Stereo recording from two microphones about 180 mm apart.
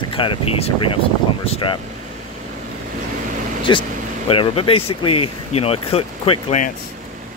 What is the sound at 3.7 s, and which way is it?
Speech, 30° left (ahead or behind).